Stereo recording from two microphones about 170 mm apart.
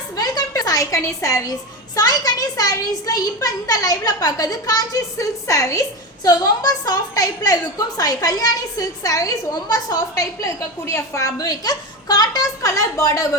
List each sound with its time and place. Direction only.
0.2 s a woman's voice: 20° left (ahead or behind)